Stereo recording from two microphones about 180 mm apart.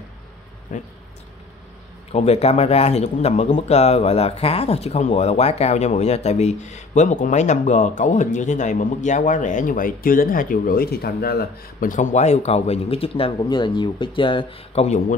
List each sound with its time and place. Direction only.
0.7 s speech: 45° left (ahead or behind)
2.1 s speech: 35° left (ahead or behind)